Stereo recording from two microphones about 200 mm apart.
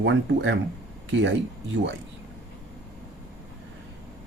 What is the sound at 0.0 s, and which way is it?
Speech, 60° right (ahead or behind).